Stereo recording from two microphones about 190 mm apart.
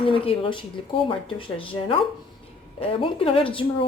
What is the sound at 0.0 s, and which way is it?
Speech, 30° left (ahead or behind).